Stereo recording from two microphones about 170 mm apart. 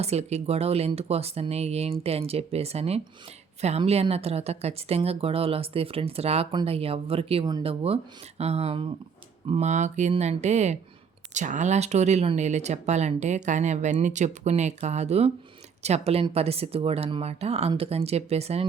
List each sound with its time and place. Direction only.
0.0 s a woman's voice: 40° right (ahead or behind)